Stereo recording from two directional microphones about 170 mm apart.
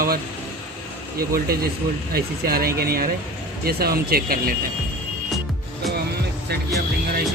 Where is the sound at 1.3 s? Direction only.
65° right (ahead or behind).